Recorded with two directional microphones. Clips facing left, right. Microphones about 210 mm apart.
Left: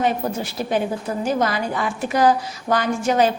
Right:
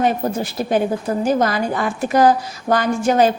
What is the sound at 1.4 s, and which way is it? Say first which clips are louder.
A woman's voice: right 3 dB; 45° right (ahead or behind).